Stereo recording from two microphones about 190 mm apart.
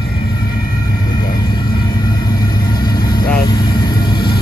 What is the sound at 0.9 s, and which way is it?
Vehicle, 20° left (ahead or behind).